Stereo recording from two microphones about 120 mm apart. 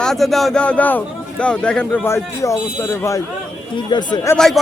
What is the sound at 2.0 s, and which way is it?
Speech, 25° left (ahead or behind).